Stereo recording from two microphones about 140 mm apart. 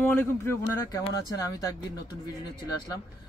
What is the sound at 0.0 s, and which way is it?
Speech, 15° left (ahead or behind).